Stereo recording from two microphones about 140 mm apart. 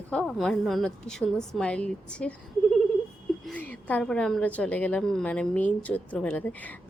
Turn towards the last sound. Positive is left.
turn(degrees=10)  # may be behind; listen again after turning